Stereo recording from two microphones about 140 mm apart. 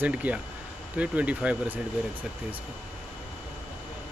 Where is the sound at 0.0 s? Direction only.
10° right (ahead or behind).